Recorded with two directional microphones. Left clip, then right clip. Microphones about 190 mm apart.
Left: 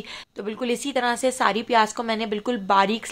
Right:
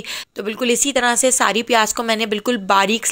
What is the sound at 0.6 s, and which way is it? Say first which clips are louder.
A woman's voice: right 7 dB; 20° right (ahead or behind).